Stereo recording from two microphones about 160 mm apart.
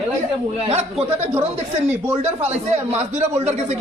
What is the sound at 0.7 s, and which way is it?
Speech, 40° right (ahead or behind).